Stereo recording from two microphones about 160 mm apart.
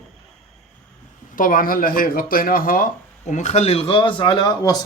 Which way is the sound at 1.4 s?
60° left (ahead or behind).